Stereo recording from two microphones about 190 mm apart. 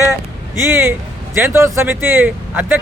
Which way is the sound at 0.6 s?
15° right (ahead or behind).